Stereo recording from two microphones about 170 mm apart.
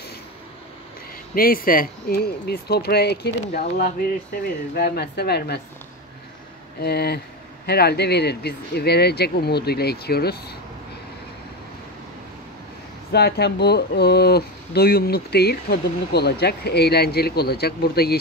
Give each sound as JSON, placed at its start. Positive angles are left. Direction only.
{"t": 1.3, "sound": "speech", "side_deg": 60}
{"t": 6.8, "sound": "speech", "side_deg": 70}
{"t": 13.1, "sound": "speech", "side_deg": 75}